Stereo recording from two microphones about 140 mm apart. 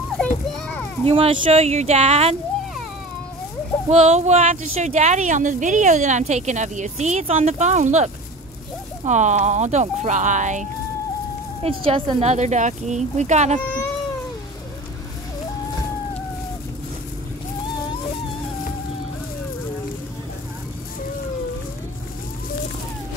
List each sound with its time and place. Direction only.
1.0 s speech: 40° right (ahead or behind)
3.9 s speech: 50° right (ahead or behind)
11.6 s speech: 45° right (ahead or behind)